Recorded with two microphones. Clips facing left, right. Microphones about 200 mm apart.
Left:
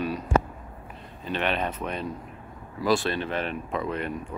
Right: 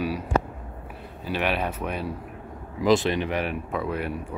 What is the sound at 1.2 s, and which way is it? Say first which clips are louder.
Speech: right 1 dB; 10° right (ahead or behind).